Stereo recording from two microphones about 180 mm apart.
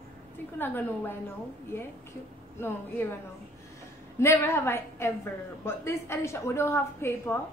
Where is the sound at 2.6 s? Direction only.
15° left (ahead or behind).